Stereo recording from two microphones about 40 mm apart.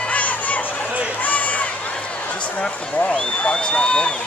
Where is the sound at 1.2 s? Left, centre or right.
Left.